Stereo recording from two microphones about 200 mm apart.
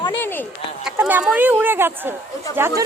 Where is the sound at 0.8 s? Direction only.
5° right (ahead or behind).